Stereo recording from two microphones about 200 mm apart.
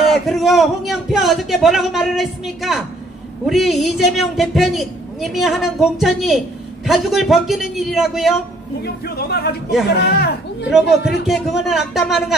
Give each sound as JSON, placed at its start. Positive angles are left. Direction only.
{"t": 0.3, "sound": "a woman's voice", "side_deg": 0}
{"t": 8.8, "sound": "speech", "side_deg": 50}
{"t": 11.2, "sound": "a woman's voice", "side_deg": 0}